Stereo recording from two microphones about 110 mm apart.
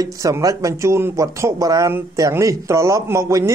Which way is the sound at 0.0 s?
30° right (ahead or behind).